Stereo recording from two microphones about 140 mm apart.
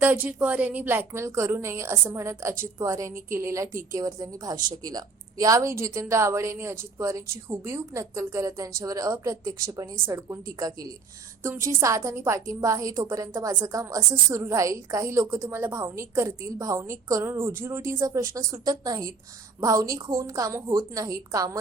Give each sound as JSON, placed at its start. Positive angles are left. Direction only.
{"t": 0.0, "sound": "a woman's voice", "side_deg": -10}
{"t": 11.4, "sound": "a woman's voice", "side_deg": -20}